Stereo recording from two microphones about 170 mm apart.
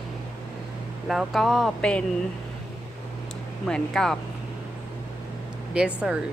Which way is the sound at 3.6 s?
5° left (ahead or behind).